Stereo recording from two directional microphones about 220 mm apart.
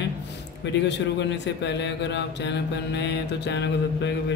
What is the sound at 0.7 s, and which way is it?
Mantra, 55° left (ahead or behind).